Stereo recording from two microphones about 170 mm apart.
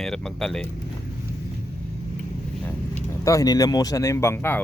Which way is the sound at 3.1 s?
20° left (ahead or behind).